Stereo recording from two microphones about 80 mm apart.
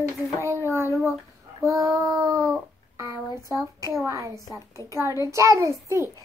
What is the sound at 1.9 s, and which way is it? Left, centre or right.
Child singing, right.